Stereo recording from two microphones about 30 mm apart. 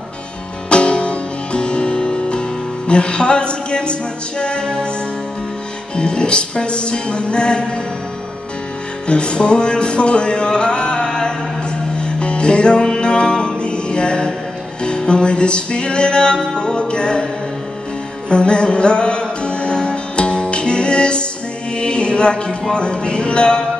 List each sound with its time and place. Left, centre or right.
0.7 s music: left
5.9 s music: left
9.0 s music: left
18.3 s music: left
21.7 s speech: left